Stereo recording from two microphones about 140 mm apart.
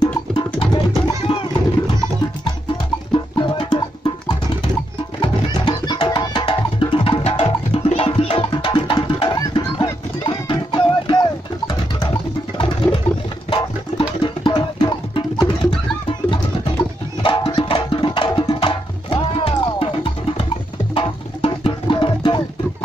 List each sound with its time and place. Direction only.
0.0 s music: 30° left (ahead or behind)
3.1 s music: 35° left (ahead or behind)
5.2 s music: 30° left (ahead or behind)
11.6 s a sound: 30° left (ahead or behind)
13.5 s music: 40° left (ahead or behind)